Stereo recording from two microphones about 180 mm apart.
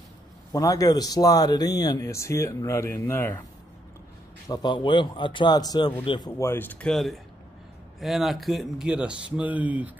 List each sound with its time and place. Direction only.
0.5 s speech: 20° left (ahead or behind)
4.5 s speech: 20° left (ahead or behind); by 9.9 s 10° right (ahead or behind)